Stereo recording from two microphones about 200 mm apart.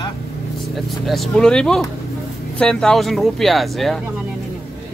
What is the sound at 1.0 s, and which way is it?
Speech, centre (ahead or behind).